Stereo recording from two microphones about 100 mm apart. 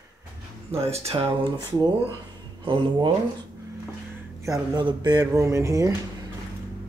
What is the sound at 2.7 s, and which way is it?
Speech, 55° right (ahead or behind).